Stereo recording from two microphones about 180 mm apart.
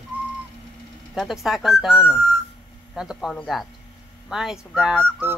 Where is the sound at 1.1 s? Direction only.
Centre (ahead or behind).